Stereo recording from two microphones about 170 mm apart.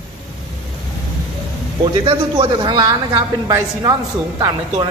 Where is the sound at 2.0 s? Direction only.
30° right (ahead or behind).